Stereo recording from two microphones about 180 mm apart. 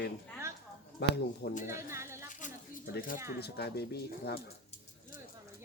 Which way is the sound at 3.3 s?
65° left (ahead or behind).